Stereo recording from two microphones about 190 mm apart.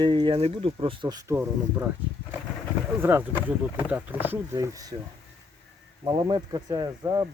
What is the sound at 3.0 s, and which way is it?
Speech, 10° right (ahead or behind).